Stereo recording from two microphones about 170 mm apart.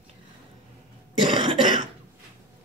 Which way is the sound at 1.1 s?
25° right (ahead or behind).